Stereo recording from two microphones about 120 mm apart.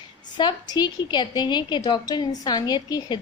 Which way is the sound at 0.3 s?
35° left (ahead or behind).